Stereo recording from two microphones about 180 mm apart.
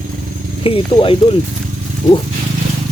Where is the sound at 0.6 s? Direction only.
30° left (ahead or behind).